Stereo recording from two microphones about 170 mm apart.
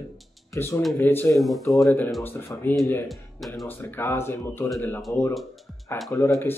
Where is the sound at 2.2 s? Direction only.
10° left (ahead or behind).